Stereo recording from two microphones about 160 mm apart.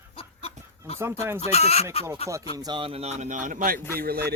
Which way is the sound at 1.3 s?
40° left (ahead or behind).